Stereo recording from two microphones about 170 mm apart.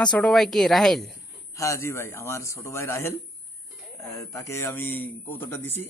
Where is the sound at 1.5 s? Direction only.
20° left (ahead or behind).